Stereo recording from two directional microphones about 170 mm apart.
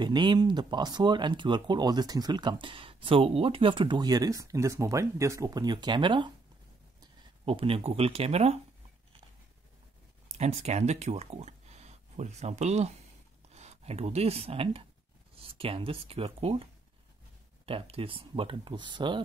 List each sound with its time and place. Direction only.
0.0 s speech: 25° right (ahead or behind)
10.2 s speech: 40° right (ahead or behind)
17.6 s speech: 35° right (ahead or behind)